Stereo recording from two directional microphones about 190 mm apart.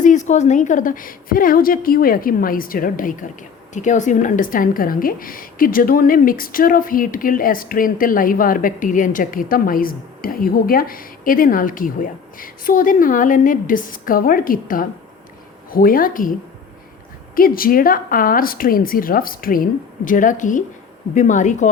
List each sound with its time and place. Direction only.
0.0 s a woman's voice: 40° left (ahead or behind)
17.3 s a woman's voice: 50° left (ahead or behind)